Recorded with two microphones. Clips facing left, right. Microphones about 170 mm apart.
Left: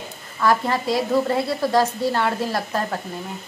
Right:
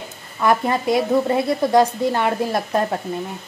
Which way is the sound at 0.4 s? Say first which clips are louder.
Right 2 dB; 20° right (ahead or behind).